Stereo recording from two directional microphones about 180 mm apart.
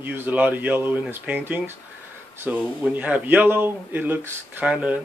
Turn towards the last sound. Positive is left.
turn(degrees=-5)  # may be behind; listen again after turning